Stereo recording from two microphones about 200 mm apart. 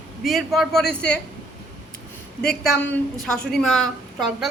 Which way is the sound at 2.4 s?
5° left (ahead or behind).